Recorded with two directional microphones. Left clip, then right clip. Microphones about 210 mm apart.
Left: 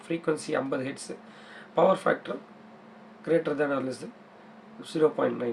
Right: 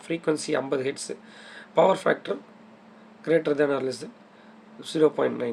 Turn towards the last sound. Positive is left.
turn(degrees=-50)  # may be behind; listen again after turning